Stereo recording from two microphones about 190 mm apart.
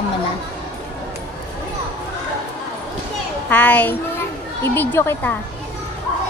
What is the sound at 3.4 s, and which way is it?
A woman's voice, 10° left (ahead or behind).